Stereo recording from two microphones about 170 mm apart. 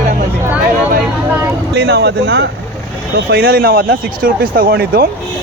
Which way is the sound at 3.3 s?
60° right (ahead or behind).